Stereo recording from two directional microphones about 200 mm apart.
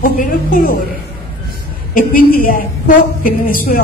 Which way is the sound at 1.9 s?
45° left (ahead or behind).